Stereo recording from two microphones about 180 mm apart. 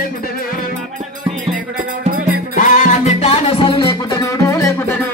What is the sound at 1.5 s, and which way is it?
Music, 50° right (ahead or behind).